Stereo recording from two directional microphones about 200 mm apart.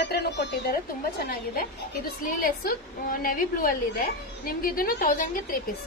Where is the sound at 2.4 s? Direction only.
45° left (ahead or behind).